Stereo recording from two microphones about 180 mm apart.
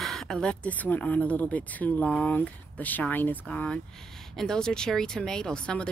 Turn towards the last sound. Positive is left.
turn(degrees=5)  # may be behind; listen again after turning